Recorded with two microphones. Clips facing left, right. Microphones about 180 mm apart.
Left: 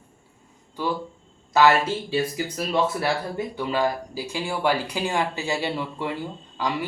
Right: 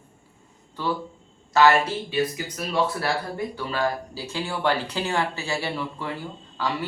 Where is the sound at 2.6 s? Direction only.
20° left (ahead or behind).